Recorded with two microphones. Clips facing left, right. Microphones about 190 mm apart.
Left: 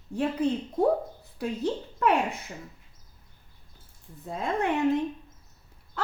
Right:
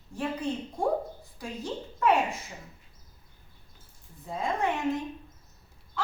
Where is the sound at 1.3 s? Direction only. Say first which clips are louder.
Left 7 dB; 60° left (ahead or behind).